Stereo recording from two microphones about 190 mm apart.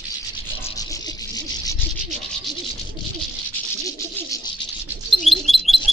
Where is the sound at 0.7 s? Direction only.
20° left (ahead or behind).